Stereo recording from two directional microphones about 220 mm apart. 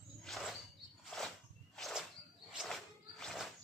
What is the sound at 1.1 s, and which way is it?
Walk, centre (ahead or behind).